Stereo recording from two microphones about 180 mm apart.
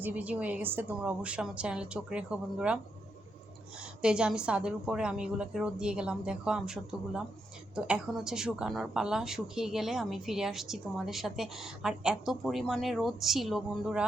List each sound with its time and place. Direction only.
0.0 s a woman's voice: 10° right (ahead or behind)
3.8 s speech: 5° right (ahead or behind)